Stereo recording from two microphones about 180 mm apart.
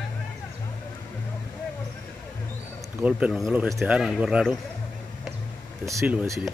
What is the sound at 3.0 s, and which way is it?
Speech, 5° right (ahead or behind).